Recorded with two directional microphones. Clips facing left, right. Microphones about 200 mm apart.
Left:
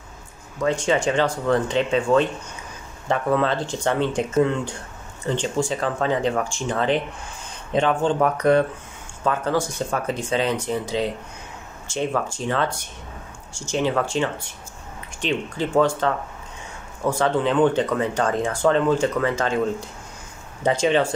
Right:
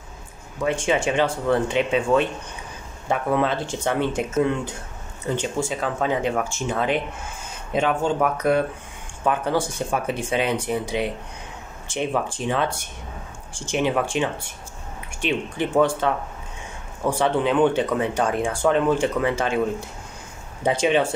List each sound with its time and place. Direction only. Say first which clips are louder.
0.6 s speech: left 1 dB; 10° right (ahead or behind)
13.7 s speech: even; 15° right (ahead or behind)
17.2 s speech: even; 15° right (ahead or behind)
20.8 s speech: even; 15° right (ahead or behind)